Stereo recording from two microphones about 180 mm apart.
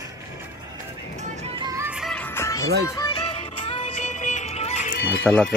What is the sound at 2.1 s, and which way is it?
Music, 10° left (ahead or behind).